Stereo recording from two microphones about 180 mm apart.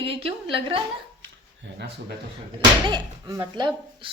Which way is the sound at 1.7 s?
90° right.